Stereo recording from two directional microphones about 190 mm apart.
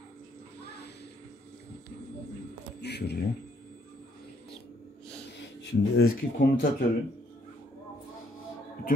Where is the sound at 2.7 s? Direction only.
60° left (ahead or behind).